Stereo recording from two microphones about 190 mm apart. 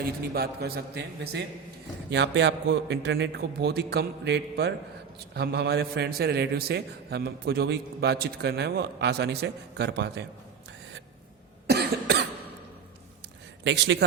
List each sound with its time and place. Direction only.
0.3 s a man's voice: 55° right (ahead or behind)
2.0 s a man's voice: 70° right (ahead or behind)
11.7 s cough: 60° right (ahead or behind)
13.7 s a man's voice: 70° right (ahead or behind)